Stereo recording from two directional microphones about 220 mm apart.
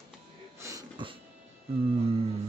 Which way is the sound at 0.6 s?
20° right (ahead or behind).